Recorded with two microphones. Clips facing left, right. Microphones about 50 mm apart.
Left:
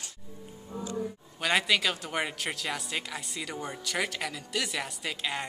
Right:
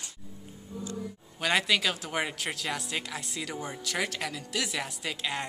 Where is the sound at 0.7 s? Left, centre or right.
Left.